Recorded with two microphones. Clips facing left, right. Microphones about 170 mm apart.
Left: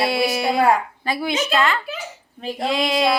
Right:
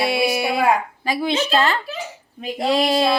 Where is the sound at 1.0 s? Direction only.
20° right (ahead or behind).